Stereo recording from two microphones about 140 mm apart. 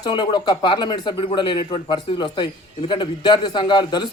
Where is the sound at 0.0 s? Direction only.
30° left (ahead or behind).